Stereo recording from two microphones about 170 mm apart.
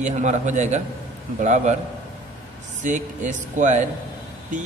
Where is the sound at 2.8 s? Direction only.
45° right (ahead or behind).